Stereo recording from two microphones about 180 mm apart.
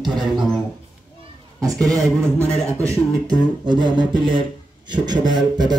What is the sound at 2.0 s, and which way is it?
Speech, 5° left (ahead or behind).